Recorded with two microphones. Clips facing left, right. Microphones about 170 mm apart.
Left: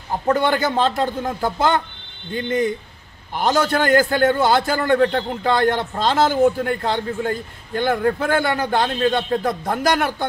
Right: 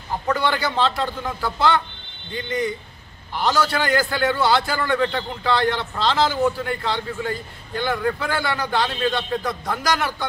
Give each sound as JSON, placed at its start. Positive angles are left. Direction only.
{"t": 0.3, "sound": "a man's voice", "side_deg": 45}